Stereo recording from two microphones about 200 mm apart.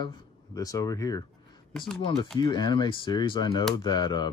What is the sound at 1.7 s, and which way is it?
Speech, 5° left (ahead or behind).